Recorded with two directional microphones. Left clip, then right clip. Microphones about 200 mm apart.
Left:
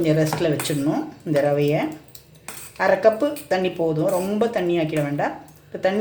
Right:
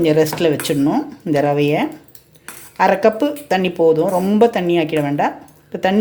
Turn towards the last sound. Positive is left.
turn(degrees=-40)  # may be behind; listen again after turning